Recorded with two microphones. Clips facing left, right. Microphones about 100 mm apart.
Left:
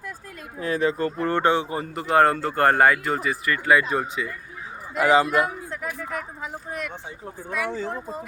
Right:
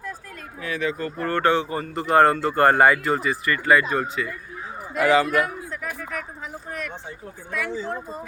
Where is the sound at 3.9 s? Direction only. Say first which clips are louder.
Right 1 dB; 15° left (ahead or behind).